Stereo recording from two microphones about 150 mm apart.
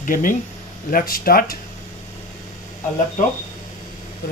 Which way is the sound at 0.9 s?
75° left (ahead or behind).